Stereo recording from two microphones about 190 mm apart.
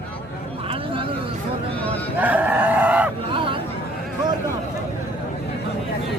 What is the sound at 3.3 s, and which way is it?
Chatter, 25° right (ahead or behind).